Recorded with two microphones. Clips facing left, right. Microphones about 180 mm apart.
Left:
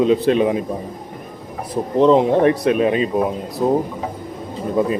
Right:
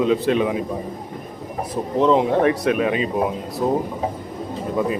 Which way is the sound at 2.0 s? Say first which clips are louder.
Left 4 dB; 30° left (ahead or behind).